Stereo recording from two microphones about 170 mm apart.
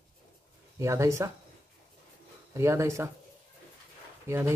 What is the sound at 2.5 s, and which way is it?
Speech, 15° right (ahead or behind).